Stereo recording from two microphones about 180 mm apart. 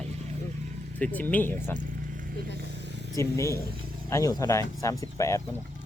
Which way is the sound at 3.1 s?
15° left (ahead or behind).